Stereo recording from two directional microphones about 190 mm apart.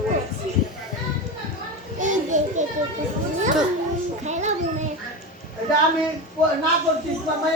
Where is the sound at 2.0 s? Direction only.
40° right (ahead or behind).